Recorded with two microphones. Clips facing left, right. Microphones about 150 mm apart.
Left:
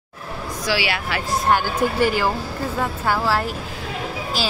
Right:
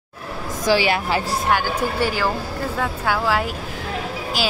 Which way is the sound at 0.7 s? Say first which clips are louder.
Right 5 dB; 45° right (ahead or behind).